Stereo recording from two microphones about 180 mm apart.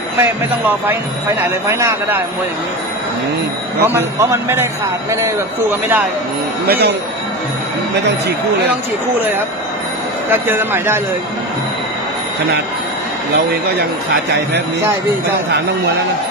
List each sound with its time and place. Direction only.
0.2 s speech: 10° right (ahead or behind)
3.8 s speech: 15° right (ahead or behind)
6.7 s speech: 65° right (ahead or behind)
10.3 s speech: 10° right (ahead or behind)
13.5 s speech: 60° right (ahead or behind)